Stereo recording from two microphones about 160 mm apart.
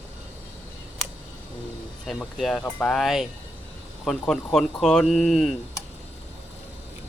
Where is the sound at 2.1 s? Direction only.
Centre (ahead or behind).